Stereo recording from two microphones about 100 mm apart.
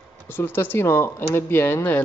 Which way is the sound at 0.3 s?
20° left (ahead or behind).